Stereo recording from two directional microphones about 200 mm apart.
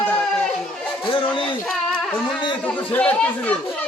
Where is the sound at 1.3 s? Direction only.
25° left (ahead or behind).